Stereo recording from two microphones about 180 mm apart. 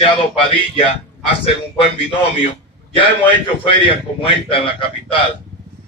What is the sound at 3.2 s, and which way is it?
Speech, 30° left (ahead or behind).